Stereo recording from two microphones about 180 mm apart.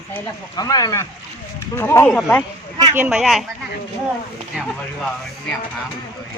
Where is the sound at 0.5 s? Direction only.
20° left (ahead or behind).